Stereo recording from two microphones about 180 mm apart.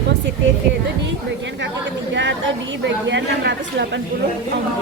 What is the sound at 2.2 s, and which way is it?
A woman's voice, 80° right.